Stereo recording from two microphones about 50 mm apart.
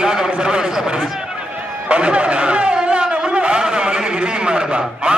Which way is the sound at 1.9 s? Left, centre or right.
Right.